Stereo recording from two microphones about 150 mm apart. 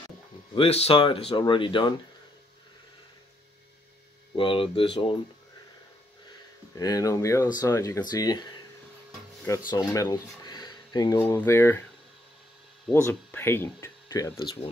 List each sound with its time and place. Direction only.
0.6 s speech: 40° left (ahead or behind)
4.4 s speech: 35° left (ahead or behind)
6.7 s speech: 25° left (ahead or behind)
9.7 s speech: 25° left (ahead or behind)
12.9 s speech: 15° left (ahead or behind)
14.3 s speech: 40° left (ahead or behind)